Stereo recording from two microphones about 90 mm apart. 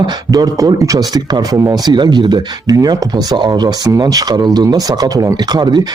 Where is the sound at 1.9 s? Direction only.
55° right (ahead or behind).